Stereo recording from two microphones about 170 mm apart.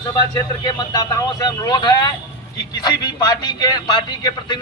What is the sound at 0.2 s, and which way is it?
A man's voice, 25° left (ahead or behind).